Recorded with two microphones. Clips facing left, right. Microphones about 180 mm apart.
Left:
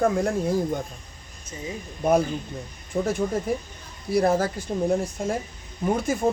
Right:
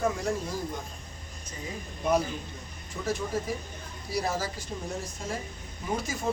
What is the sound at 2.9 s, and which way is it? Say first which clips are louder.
Speech: left 6 dB; 55° left (ahead or behind).